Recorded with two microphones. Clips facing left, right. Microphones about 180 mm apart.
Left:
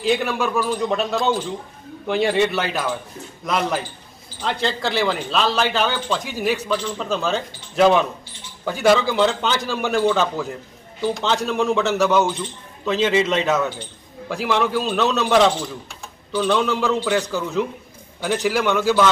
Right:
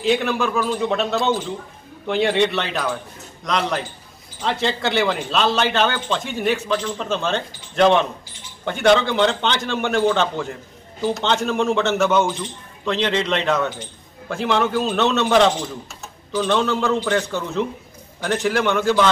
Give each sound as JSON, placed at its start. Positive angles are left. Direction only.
{"t": 0.0, "sound": "speech", "side_deg": 0}